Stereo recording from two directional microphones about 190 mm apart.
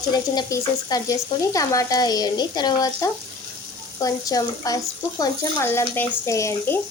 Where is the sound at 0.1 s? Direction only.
20° left (ahead or behind).